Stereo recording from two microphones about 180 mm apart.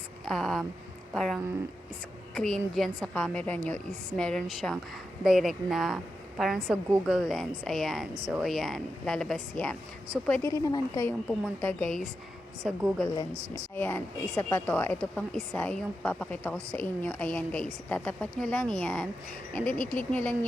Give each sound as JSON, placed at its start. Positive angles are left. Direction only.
{"t": 0.3, "sound": "a woman's voice", "side_deg": 0}
{"t": 10.5, "sound": "a woman's voice", "side_deg": 20}
{"t": 11.3, "sound": "speech", "side_deg": 5}
{"t": 13.3, "sound": "speech", "side_deg": -30}
{"t": 13.7, "sound": "a woman's voice", "side_deg": 10}